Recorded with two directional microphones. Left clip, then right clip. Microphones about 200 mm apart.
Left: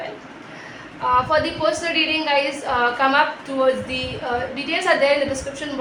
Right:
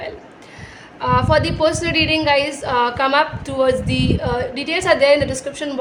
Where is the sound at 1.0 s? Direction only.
55° right (ahead or behind).